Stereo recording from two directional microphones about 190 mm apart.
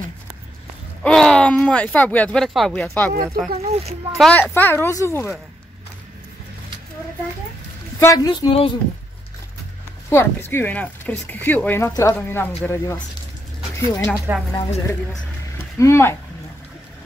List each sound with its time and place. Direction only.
1.0 s speech: 5° left (ahead or behind)
8.0 s a woman's voice: 20° left (ahead or behind)
10.0 s speech: 15° left (ahead or behind)
14.5 s a woman's voice: 30° left (ahead or behind)
15.5 s a sound: 15° left (ahead or behind)